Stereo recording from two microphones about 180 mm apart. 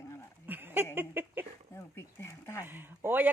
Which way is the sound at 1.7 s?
15° left (ahead or behind).